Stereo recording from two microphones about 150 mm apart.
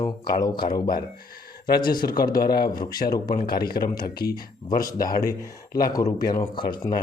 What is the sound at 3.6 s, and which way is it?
Speech, 90° left.